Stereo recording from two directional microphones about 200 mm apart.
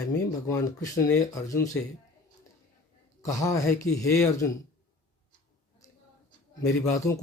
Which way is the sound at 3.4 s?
15° left (ahead or behind).